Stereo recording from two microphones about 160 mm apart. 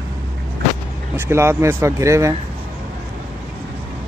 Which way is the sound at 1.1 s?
15° right (ahead or behind).